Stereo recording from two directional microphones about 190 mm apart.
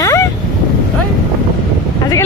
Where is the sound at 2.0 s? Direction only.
15° left (ahead or behind).